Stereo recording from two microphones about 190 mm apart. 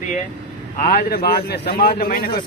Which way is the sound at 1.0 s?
55° left (ahead or behind).